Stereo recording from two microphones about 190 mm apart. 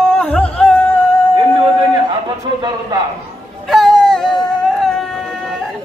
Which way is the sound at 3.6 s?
Centre (ahead or behind).